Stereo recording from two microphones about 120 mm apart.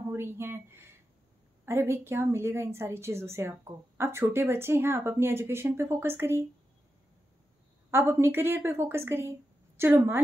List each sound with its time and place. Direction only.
0.1 s speech: 20° right (ahead or behind)
7.9 s a woman's voice: 20° right (ahead or behind)